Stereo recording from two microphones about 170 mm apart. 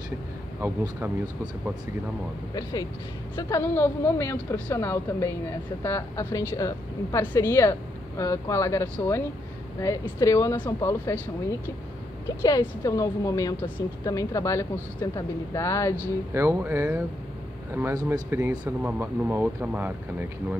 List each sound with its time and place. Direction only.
2.5 s a woman's voice: 20° left (ahead or behind)
12.4 s a woman's voice: 20° left (ahead or behind)
16.0 s speech: 15° right (ahead or behind)